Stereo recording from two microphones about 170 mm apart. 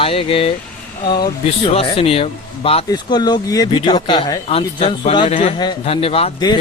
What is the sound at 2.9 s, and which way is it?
Speech, 25° left (ahead or behind).